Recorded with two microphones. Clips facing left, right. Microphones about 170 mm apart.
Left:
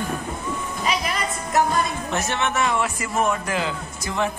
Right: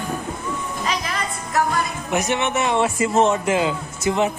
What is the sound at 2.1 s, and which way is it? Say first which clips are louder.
A man's voice: right 5 dB; 15° right (ahead or behind).